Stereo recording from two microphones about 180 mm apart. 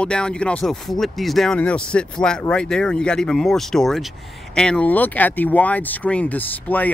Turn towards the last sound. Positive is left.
turn(degrees=10)  # may be behind; listen again after turning